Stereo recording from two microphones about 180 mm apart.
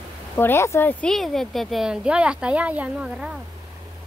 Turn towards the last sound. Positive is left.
turn(degrees=-5)  # may be behind; listen again after turning